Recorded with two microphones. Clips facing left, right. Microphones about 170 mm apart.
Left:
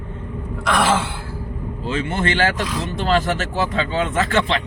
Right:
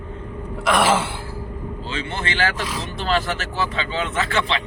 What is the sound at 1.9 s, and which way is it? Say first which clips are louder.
Speech: left 7 dB; 45° left (ahead or behind).